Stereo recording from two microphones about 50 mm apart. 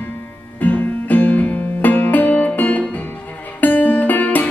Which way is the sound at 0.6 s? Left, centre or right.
Left.